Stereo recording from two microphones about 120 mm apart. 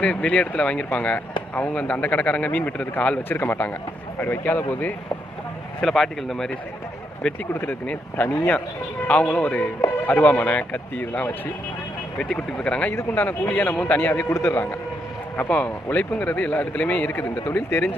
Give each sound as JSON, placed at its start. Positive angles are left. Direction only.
{"t": 0.0, "sound": "speech", "side_deg": 10}
{"t": 5.8, "sound": "speech", "side_deg": 0}
{"t": 7.6, "sound": "speech", "side_deg": 15}